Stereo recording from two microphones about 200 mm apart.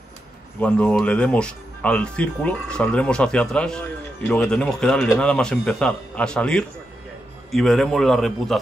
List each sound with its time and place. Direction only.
0.6 s speech: 10° left (ahead or behind)